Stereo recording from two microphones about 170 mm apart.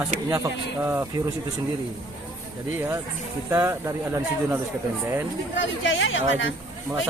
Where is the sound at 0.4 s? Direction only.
15° right (ahead or behind).